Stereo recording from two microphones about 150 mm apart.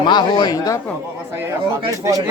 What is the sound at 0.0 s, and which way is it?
Speech, 30° left (ahead or behind).